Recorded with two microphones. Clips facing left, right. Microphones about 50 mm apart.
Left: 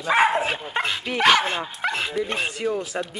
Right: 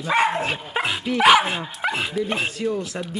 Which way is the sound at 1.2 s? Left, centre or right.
Centre.